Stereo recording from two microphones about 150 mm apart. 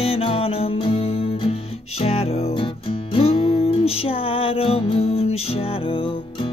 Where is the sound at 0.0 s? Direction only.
40° left (ahead or behind).